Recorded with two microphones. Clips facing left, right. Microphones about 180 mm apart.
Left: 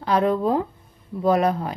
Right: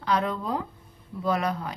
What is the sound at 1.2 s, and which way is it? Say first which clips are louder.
Speech: left 7 dB; 50° left (ahead or behind).